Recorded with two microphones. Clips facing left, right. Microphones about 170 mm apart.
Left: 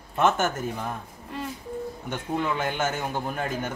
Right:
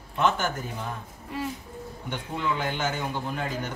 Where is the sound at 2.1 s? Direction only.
50° left (ahead or behind).